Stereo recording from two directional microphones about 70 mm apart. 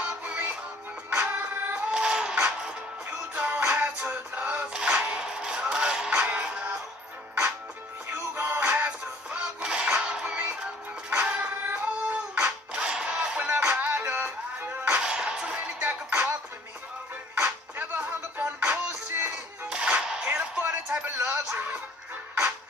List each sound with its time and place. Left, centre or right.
0.2 s music: right
1.9 s a sound: centre
3.1 s music: right
8.1 s music: right
11.1 s a sound: right
13.8 s music: right
15.0 s music: centre
17.5 s music: right
19.7 s a sound: centre